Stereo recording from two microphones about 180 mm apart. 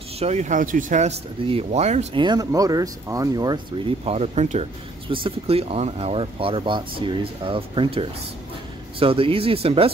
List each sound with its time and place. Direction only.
0.2 s speech: 40° right (ahead or behind)
2.2 s speech: 20° right (ahead or behind)